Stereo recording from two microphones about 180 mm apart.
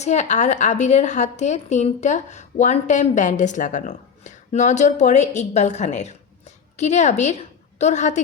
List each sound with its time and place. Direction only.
0.0 s speech: 40° left (ahead or behind)